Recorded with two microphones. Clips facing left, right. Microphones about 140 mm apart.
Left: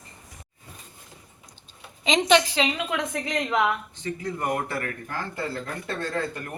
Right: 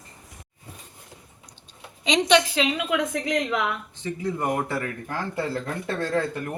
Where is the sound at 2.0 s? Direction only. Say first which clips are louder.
Even; centre (ahead or behind).